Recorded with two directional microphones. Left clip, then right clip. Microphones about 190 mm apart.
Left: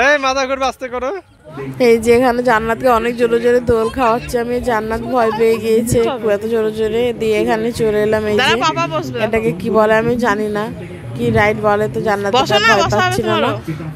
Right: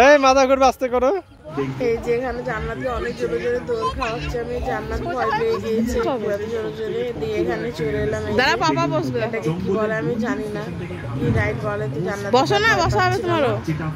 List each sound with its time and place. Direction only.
0.0 s speech: 15° right (ahead or behind)
1.8 s speech: 50° left (ahead or behind)
6.5 s speech: 45° left (ahead or behind)
8.4 s speech: 10° right (ahead or behind)
9.3 s speech: 50° left (ahead or behind)
12.3 s speech: 10° right (ahead or behind)